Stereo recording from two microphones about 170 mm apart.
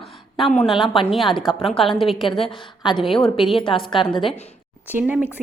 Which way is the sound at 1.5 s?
35° left (ahead or behind).